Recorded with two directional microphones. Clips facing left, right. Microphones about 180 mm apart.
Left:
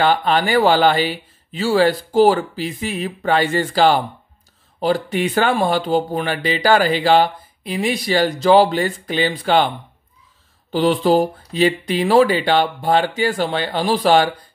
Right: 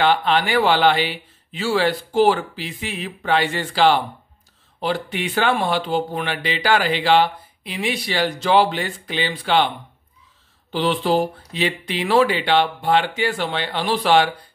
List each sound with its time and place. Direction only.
0.0 s speech: 40° left (ahead or behind)
10.7 s speech: 40° left (ahead or behind)